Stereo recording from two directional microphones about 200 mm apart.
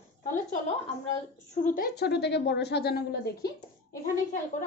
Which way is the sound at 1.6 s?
45° left (ahead or behind).